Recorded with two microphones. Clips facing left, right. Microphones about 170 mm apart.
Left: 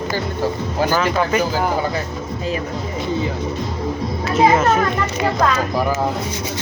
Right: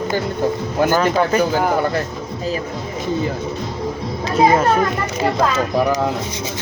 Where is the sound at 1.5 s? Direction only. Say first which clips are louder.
Right 2 dB; 55° right (ahead or behind).